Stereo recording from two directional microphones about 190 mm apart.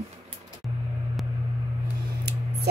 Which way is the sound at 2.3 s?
60° right (ahead or behind).